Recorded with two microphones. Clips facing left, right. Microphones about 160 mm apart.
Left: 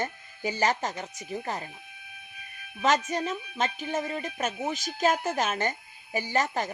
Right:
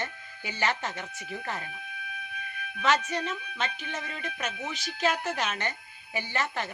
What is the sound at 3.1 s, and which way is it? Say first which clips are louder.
A woman's voice: left 3 dB; 40° left (ahead or behind).